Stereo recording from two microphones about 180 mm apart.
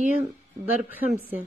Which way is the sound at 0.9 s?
10° right (ahead or behind).